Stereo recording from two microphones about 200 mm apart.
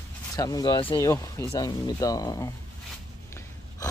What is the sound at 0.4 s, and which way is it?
Speech, 20° left (ahead or behind).